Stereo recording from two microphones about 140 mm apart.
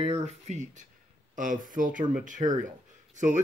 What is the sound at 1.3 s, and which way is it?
Speech, 70° right (ahead or behind).